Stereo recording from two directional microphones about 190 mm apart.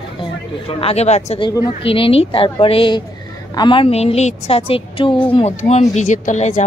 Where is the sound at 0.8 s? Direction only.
35° left (ahead or behind).